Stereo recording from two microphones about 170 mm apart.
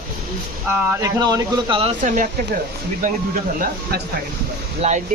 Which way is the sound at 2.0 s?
50° right (ahead or behind).